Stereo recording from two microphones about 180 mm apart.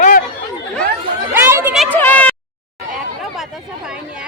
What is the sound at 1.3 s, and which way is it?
Speech, 15° right (ahead or behind).